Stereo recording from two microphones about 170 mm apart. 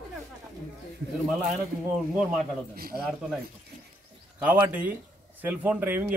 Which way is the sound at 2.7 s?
60° right (ahead or behind).